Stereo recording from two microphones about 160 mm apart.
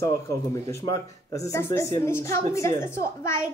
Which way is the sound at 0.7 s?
20° left (ahead or behind).